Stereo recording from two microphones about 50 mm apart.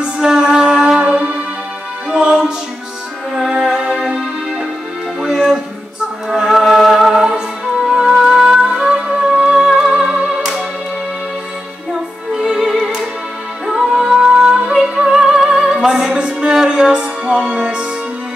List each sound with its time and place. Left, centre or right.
0.0 s music: centre
2.0 s music: centre
3.5 s music: centre
5.2 s music: centre
11.9 s music: centre